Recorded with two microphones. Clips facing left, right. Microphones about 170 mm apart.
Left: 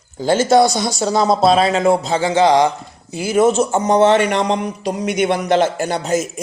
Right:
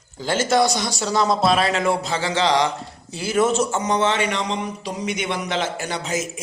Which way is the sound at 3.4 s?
50° left (ahead or behind).